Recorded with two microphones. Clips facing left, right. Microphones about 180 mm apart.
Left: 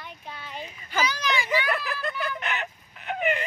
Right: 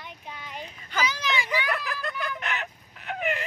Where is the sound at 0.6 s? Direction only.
5° left (ahead or behind).